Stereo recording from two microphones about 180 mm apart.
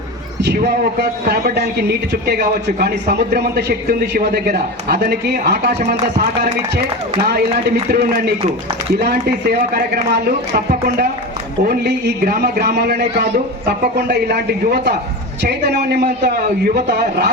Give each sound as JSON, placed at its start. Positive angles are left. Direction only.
{"t": 0.4, "sound": "a man's voice", "side_deg": -65}
{"t": 11.6, "sound": "a man's voice", "side_deg": -65}
{"t": 16.0, "sound": "a man's voice", "side_deg": -45}